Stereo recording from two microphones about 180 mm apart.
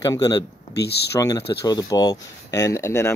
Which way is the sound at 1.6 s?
20° left (ahead or behind).